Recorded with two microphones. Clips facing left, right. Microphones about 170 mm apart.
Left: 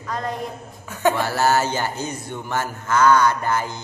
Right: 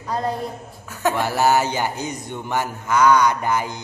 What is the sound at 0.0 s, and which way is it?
Speech, 30° right (ahead or behind).